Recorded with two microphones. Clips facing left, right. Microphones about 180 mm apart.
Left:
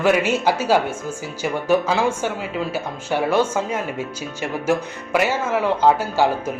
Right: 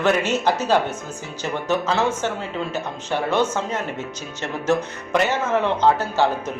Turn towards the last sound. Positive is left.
turn(degrees=10)  # may be behind; listen again after turning